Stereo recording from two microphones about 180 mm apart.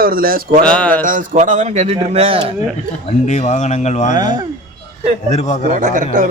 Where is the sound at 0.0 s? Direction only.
55° right (ahead or behind).